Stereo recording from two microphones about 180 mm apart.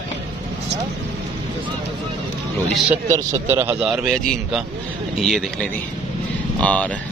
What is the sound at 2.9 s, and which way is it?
A man's voice, 10° right (ahead or behind).